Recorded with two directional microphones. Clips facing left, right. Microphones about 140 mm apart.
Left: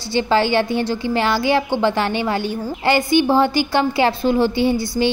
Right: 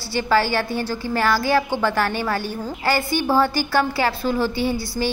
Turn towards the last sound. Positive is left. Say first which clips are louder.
# left 5 dB
turn(degrees=20)  # may be behind; listen again after turning